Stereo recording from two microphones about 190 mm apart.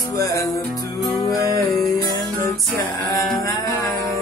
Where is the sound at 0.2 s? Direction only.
20° left (ahead or behind).